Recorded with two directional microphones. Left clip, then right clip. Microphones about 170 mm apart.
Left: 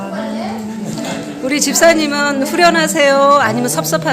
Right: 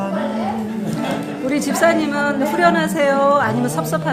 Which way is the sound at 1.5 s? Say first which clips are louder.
Left 5 dB; 20° left (ahead or behind).